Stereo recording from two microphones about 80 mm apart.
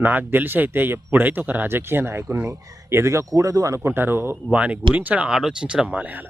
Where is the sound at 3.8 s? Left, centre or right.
Right.